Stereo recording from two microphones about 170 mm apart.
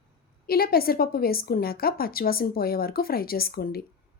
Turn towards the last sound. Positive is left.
turn(degrees=65)  # may be behind; listen again after turning